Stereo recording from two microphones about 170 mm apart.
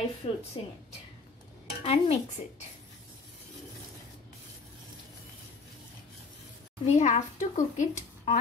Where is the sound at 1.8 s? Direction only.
35° left (ahead or behind).